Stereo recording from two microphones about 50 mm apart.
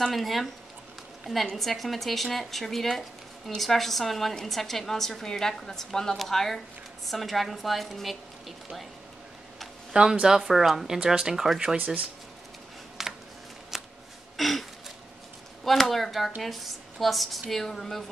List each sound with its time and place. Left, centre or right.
0.0 s speech: centre
10.2 s speech: centre
11.0 s speech: centre
11.7 s speech: right
13.0 s a sound: centre
14.3 s a sound: centre
15.6 s speech: centre